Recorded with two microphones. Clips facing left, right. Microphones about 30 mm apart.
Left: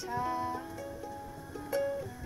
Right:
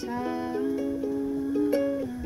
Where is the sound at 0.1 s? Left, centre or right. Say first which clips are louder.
Right 2 dB; right.